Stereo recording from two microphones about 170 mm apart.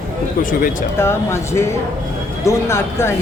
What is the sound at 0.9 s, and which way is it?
Speech, 15° left (ahead or behind).